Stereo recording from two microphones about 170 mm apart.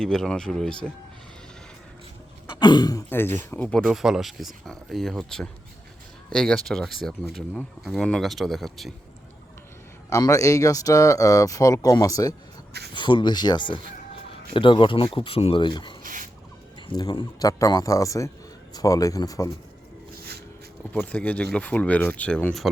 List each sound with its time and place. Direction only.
0.0 s speech: 5° left (ahead or behind)
2.6 s speech: 25° left (ahead or behind)
3.1 s speech: 10° left (ahead or behind)
10.1 s speech: 20° left (ahead or behind)
16.0 s rodents: 50° right (ahead or behind)
16.8 s speech: 25° left (ahead or behind)
20.9 s speech: 10° left (ahead or behind)